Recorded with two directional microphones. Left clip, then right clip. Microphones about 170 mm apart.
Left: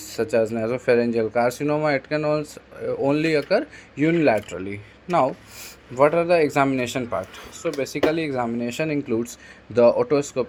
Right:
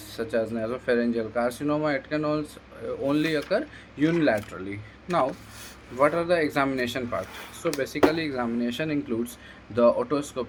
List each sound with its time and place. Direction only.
0.1 s speech: 40° left (ahead or behind)
6.0 s speech: 35° left (ahead or behind)